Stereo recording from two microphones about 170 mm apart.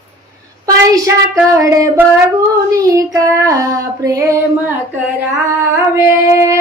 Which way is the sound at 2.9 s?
20° right (ahead or behind).